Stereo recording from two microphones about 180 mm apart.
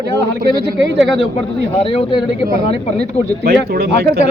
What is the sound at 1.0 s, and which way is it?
Speech, centre (ahead or behind).